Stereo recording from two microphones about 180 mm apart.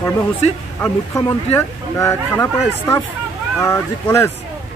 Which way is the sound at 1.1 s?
15° left (ahead or behind).